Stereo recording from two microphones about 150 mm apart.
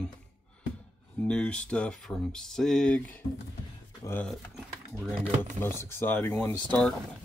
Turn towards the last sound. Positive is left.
turn(degrees=10)  # may be behind; listen again after turning